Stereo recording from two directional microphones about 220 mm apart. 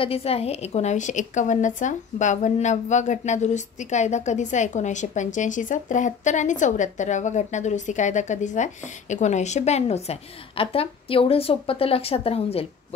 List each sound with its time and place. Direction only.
0.0 s a woman's voice: 25° left (ahead or behind)